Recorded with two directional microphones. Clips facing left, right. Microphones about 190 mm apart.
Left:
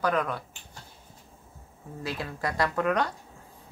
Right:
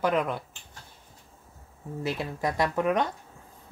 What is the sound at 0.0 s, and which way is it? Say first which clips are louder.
Speech: right 1 dB; 20° right (ahead or behind).